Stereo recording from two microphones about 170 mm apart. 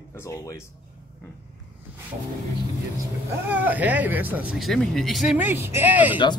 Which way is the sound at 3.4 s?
10° right (ahead or behind).